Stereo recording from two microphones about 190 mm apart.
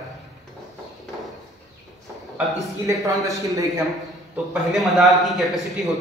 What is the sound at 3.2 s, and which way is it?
Speech, 15° right (ahead or behind).